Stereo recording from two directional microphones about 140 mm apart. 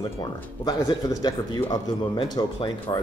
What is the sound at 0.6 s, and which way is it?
Speech, 25° left (ahead or behind).